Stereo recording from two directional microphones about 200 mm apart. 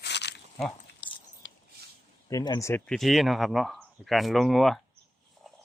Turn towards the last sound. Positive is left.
turn(degrees=0)  # may be behind; listen again after turning